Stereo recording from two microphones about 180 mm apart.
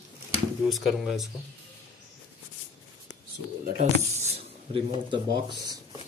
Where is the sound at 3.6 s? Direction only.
55° right (ahead or behind).